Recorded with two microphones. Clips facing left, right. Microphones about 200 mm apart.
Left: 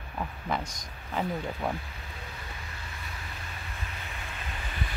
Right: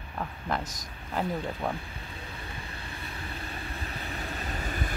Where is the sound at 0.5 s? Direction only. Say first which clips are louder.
Right 1 dB; centre (ahead or behind).